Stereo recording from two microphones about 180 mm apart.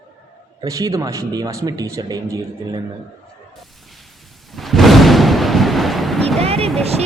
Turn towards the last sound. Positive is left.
turn(degrees=-35)  # may be behind; listen again after turning